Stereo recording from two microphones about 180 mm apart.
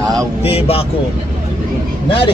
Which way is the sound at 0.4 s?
35° left (ahead or behind).